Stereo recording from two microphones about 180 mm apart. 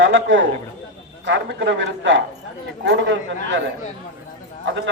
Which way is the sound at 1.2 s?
80° right.